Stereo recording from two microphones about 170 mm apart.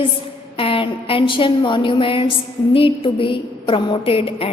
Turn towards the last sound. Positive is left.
turn(degrees=35)  # may be behind; listen again after turning